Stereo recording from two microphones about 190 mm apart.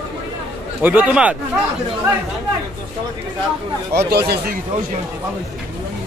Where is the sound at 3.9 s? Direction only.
60° right (ahead or behind).